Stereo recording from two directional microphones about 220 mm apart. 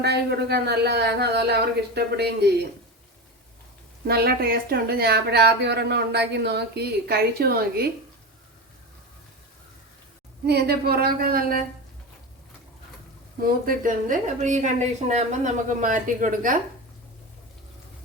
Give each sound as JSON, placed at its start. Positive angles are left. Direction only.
{"t": 0.0, "sound": "speech", "side_deg": -50}
{"t": 4.0, "sound": "speech", "side_deg": -45}
{"t": 10.4, "sound": "speech", "side_deg": -45}
{"t": 13.4, "sound": "a woman's voice", "side_deg": -40}